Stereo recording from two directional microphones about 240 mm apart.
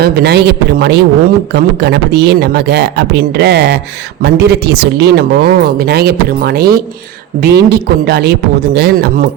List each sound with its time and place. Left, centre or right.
0.0 s speech: right